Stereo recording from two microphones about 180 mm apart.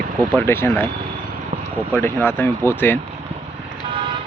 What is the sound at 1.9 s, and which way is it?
Speech, 10° left (ahead or behind).